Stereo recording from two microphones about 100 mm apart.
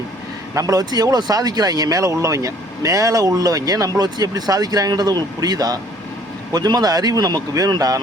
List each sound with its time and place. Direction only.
0.5 s speech: 35° right (ahead or behind)